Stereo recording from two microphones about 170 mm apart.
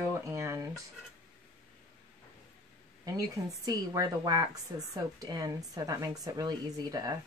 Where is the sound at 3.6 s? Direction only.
20° right (ahead or behind).